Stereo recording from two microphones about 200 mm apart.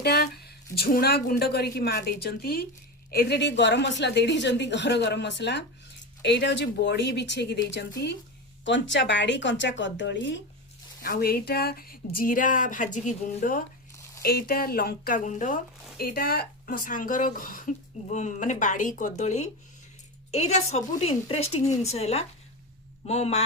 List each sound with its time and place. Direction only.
0.0 s a woman's voice: 50° left (ahead or behind)
11.0 s a woman's voice: 50° left (ahead or behind)
16.0 s speech: 50° left (ahead or behind); by 23.4 s 35° left (ahead or behind)